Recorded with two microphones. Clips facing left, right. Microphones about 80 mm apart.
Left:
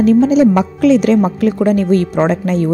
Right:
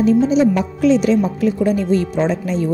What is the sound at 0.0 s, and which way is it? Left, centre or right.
A woman's voice, left.